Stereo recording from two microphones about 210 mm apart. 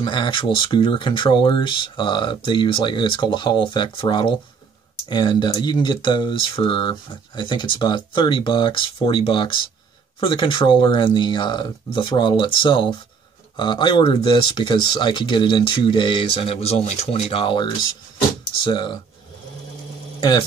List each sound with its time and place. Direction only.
0.0 s speech: 20° left (ahead or behind)
20.2 s speech: 20° left (ahead or behind)